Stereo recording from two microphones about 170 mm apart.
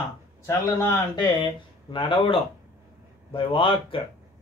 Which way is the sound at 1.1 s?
25° left (ahead or behind).